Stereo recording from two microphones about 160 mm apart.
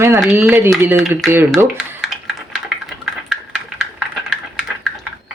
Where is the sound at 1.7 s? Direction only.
Centre (ahead or behind).